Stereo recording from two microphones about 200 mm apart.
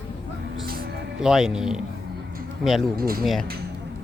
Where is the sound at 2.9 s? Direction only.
45° right (ahead or behind).